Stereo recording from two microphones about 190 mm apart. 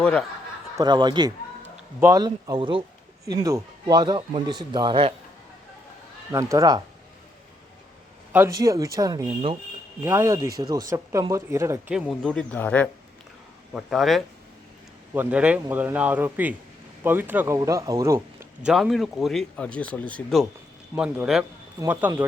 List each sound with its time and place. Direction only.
0.0 s speech: 5° left (ahead or behind)
0.8 s a man's voice: 20° right (ahead or behind)
6.3 s speech: 15° right (ahead or behind)
8.3 s speech: 15° right (ahead or behind)
11.9 s speech: centre (ahead or behind)
18.7 s speech: centre (ahead or behind)
20.9 s speech: 5° right (ahead or behind)
21.8 s speech: 15° right (ahead or behind)